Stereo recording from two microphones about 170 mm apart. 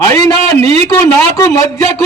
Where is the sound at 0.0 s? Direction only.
20° left (ahead or behind).